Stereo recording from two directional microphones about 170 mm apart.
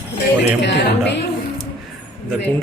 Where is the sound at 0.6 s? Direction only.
90° left.